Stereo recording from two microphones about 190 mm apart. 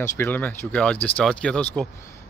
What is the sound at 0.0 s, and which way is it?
Speech, 10° left (ahead or behind).